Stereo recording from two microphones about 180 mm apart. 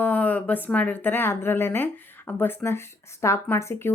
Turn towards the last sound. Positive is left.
turn(degrees=15)  # may be behind; listen again after turning